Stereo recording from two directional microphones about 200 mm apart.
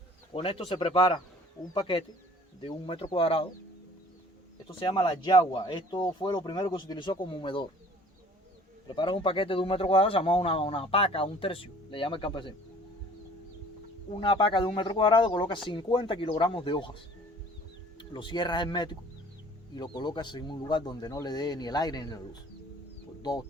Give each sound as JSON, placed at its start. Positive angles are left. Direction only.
{"t": 0.3, "sound": "speech", "side_deg": 25}
{"t": 4.8, "sound": "speech", "side_deg": 25}
{"t": 8.9, "sound": "speech", "side_deg": 25}
{"t": 14.2, "sound": "speech", "side_deg": 25}